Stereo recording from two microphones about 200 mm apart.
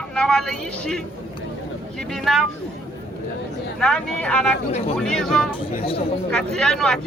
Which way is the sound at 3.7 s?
5° left (ahead or behind).